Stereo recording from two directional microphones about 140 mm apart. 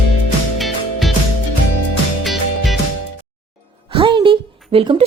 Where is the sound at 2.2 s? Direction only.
Centre (ahead or behind).